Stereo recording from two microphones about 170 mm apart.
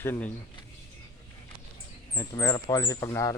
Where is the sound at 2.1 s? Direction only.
20° left (ahead or behind).